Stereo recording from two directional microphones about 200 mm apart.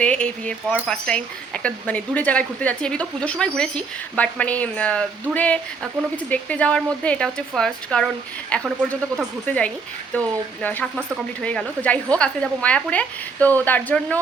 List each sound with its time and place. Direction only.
0.0 s a woman's voice: 5° left (ahead or behind)